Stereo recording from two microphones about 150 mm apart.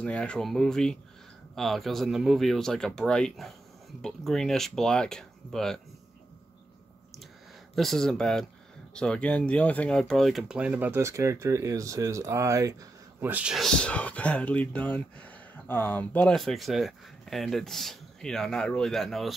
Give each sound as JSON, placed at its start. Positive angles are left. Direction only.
{"t": 0.0, "sound": "speech", "side_deg": 5}
{"t": 7.7, "sound": "speech", "side_deg": 0}
{"t": 13.2, "sound": "speech", "side_deg": -10}